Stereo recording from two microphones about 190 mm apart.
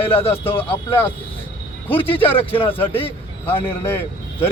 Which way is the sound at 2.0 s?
30° left (ahead or behind).